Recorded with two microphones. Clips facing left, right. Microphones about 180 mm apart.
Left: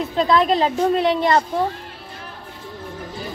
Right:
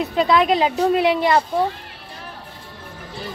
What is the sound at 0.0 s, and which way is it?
A woman's voice, 10° right (ahead or behind).